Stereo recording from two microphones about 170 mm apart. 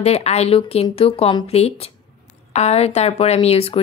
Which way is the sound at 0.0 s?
40° left (ahead or behind).